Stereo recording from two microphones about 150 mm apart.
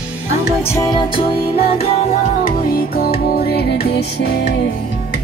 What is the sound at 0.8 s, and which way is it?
Music, 35° left (ahead or behind).